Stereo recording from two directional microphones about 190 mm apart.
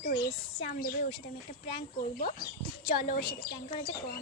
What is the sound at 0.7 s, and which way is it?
Speech, 50° left (ahead or behind).